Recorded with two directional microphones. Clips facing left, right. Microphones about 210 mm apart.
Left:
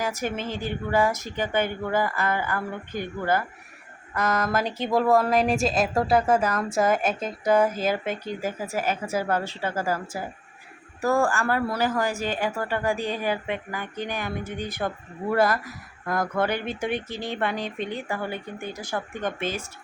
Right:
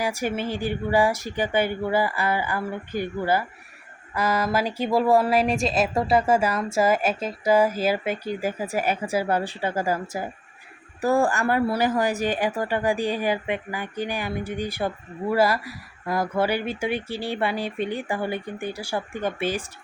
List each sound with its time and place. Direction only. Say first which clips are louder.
0.0 s a woman's voice: right 2 dB; 10° right (ahead or behind)
11.0 s a woman's voice: right 2 dB; 15° right (ahead or behind)